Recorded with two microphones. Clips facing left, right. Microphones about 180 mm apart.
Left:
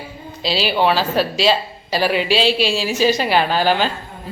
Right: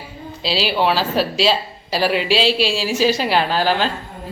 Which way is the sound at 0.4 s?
5° right (ahead or behind).